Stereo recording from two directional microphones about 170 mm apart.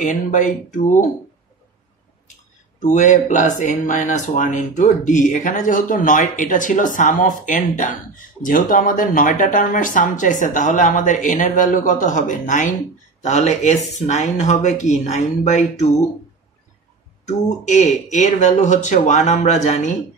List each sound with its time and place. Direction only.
0.0 s speech: 50° left (ahead or behind)
2.8 s speech: 45° left (ahead or behind)
17.3 s speech: 45° left (ahead or behind)